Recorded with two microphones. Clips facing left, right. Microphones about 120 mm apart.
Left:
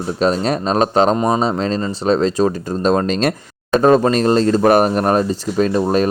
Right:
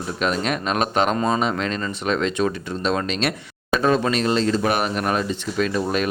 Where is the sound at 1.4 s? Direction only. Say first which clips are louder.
Left 5 dB; 30° left (ahead or behind).